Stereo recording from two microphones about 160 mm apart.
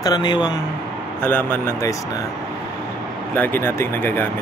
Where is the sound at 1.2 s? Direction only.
10° left (ahead or behind).